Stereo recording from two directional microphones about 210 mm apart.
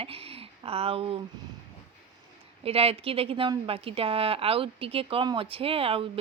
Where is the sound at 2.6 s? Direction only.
30° right (ahead or behind).